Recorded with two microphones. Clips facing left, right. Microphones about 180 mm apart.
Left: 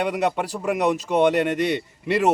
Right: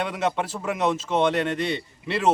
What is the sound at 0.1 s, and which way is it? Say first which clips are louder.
Speech: left 3 dB; 15° left (ahead or behind).